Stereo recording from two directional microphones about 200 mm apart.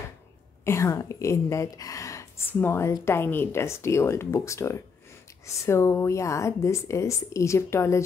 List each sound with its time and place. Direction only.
0.7 s speech: 15° left (ahead or behind)